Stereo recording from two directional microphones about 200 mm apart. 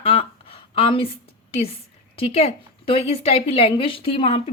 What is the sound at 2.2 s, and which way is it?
A woman's voice, 30° left (ahead or behind).